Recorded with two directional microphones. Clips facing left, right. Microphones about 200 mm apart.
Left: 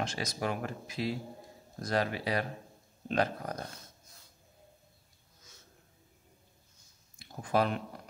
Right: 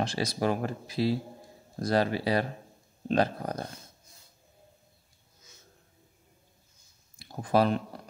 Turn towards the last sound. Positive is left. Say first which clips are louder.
# right 5 dB
turn(degrees=-35)  # may be behind; listen again after turning